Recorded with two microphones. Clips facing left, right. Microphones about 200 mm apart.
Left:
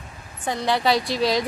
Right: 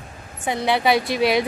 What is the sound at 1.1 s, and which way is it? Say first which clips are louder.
Speech: right 3 dB; 60° right (ahead or behind).